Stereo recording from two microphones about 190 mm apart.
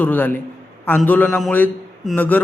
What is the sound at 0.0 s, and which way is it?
A man's voice, 10° left (ahead or behind).